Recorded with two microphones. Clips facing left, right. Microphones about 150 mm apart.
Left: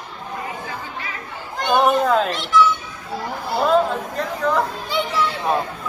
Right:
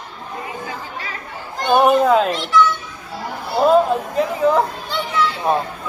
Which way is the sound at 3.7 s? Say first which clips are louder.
Right 3 dB; 5° right (ahead or behind).